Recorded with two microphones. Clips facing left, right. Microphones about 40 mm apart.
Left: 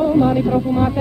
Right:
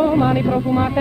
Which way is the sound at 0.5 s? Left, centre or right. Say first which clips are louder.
Left 1 dB; centre.